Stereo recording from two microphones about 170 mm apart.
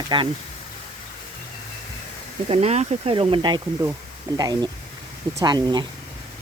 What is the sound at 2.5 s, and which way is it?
Speech, 40° right (ahead or behind).